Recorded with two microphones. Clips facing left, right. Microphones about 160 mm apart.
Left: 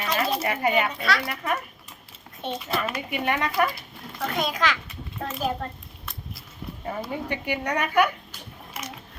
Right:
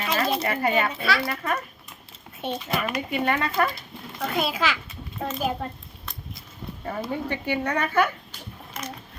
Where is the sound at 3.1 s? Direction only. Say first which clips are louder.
Right 1 dB; 15° left (ahead or behind).